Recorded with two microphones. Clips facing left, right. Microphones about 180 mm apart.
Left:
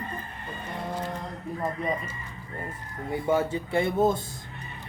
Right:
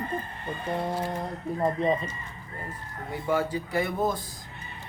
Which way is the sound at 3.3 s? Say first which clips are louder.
Left 1 dB; 25° left (ahead or behind).